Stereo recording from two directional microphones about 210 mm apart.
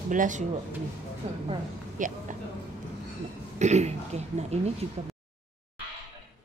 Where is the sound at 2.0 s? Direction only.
40° right (ahead or behind).